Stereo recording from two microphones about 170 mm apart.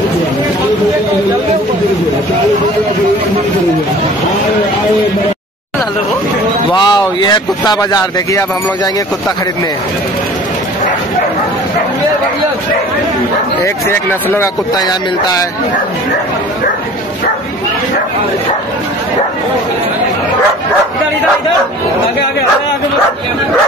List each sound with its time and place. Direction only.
6.7 s speech: 25° left (ahead or behind)
13.8 s speech: 15° left (ahead or behind)